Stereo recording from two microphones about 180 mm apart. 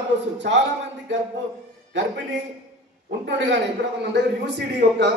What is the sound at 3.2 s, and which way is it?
A man's voice, 75° right (ahead or behind).